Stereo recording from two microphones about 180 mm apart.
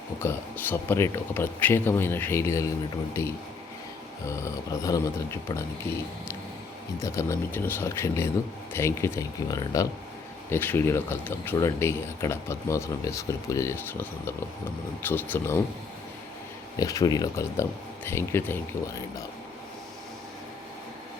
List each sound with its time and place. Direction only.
0.2 s speech: 10° left (ahead or behind)
7.0 s speech: 15° left (ahead or behind)
16.7 s speech: 20° left (ahead or behind)